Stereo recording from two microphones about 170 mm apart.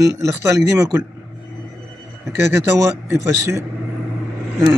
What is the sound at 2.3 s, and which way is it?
A man's voice, 15° right (ahead or behind).